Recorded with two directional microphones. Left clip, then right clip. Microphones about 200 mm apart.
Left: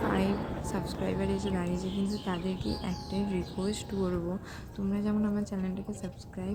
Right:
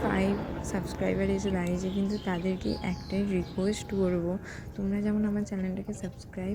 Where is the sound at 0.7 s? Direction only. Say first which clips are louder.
Right 4 dB; 10° right (ahead or behind).